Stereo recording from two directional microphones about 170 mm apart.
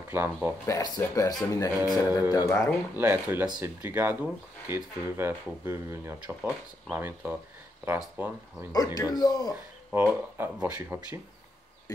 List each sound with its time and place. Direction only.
0.1 s speech: 10° right (ahead or behind)
0.7 s speech: 20° left (ahead or behind)
3.0 s speech: 10° right (ahead or behind)
8.7 s speech: 20° left (ahead or behind)
9.9 s speech: 10° right (ahead or behind)